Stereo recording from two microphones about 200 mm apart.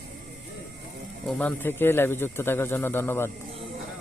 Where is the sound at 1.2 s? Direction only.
5° left (ahead or behind).